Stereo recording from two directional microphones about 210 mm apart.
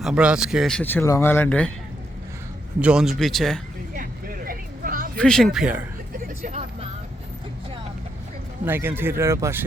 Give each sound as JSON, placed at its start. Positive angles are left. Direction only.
{"t": 0.0, "sound": "speech", "side_deg": -5}
{"t": 2.8, "sound": "speech", "side_deg": -5}
{"t": 3.9, "sound": "vehicle", "side_deg": -40}
{"t": 5.1, "sound": "speech", "side_deg": 5}
{"t": 6.2, "sound": "vehicle", "side_deg": -35}
{"t": 8.6, "sound": "speech", "side_deg": -10}